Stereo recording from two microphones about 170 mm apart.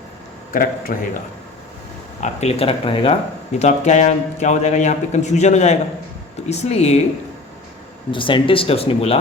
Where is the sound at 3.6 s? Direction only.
40° left (ahead or behind).